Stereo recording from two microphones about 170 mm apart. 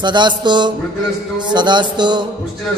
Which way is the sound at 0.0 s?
25° right (ahead or behind).